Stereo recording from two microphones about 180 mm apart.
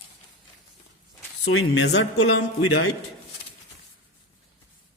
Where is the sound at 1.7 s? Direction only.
90° left.